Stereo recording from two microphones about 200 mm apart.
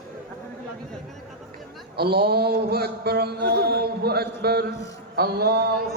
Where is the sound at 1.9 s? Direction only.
55° right (ahead or behind).